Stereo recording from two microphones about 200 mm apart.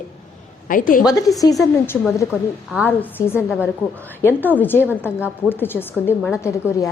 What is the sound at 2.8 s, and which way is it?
A woman's voice, 10° left (ahead or behind).